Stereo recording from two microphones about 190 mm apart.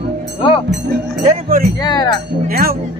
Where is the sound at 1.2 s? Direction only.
45° right (ahead or behind).